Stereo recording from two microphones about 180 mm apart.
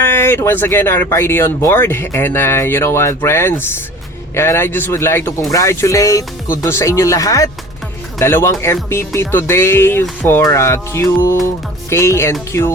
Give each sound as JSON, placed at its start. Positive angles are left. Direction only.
{"t": 0.0, "sound": "speech", "side_deg": 15}